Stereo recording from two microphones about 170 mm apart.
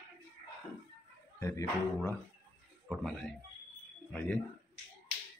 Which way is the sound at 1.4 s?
20° left (ahead or behind).